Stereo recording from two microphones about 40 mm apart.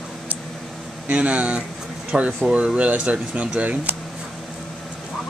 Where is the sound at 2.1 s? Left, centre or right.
Centre.